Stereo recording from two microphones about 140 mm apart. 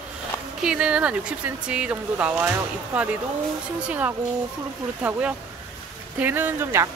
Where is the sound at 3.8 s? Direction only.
10° right (ahead or behind).